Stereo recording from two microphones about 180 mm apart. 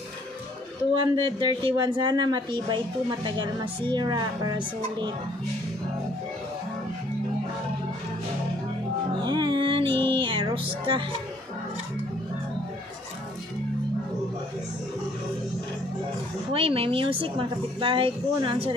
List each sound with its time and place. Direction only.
1.2 s speech: 30° right (ahead or behind)
9.1 s speech: 25° right (ahead or behind)
16.5 s speech: 30° right (ahead or behind)